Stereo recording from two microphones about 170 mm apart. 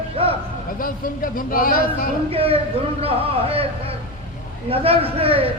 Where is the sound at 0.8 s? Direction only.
55° left (ahead or behind).